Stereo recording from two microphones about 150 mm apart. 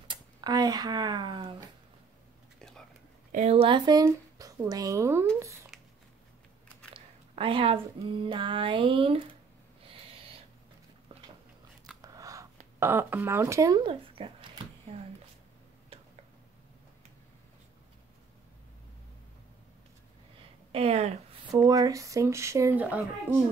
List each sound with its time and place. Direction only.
0.1 s speech: 25° right (ahead or behind)
2.6 s a sound: 5° left (ahead or behind)
3.3 s speech: 50° right (ahead or behind); by 5.2 s 20° right (ahead or behind)
5.7 s a sound: centre (ahead or behind)
6.9 s speech: 35° right (ahead or behind)
12.0 s biting: 25° right (ahead or behind)
12.7 s speech: 15° right (ahead or behind); by 14.5 s 35° right (ahead or behind)
15.9 s tick-tock: 40° right (ahead or behind)
20.7 s speech: 45° right (ahead or behind)
21.5 s speech: 25° right (ahead or behind)